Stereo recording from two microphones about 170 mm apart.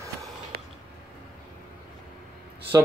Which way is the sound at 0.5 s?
65° right (ahead or behind).